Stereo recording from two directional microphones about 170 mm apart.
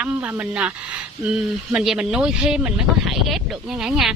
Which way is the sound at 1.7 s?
5° right (ahead or behind).